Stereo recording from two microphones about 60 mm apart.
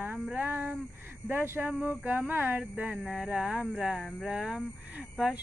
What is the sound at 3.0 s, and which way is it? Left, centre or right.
Speech, centre.